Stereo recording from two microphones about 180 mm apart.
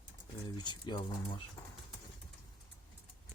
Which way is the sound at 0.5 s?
25° left (ahead or behind).